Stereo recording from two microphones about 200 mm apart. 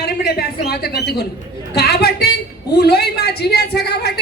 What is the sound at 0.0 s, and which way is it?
A woman's voice, 50° left (ahead or behind).